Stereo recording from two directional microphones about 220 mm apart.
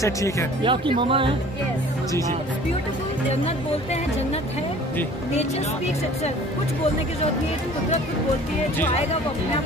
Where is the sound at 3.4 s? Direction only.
30° left (ahead or behind).